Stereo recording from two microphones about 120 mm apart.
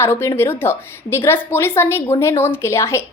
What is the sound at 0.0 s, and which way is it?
A woman's voice, 20° left (ahead or behind).